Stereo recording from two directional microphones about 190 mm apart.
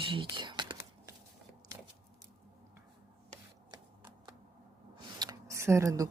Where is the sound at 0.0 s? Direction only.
25° right (ahead or behind).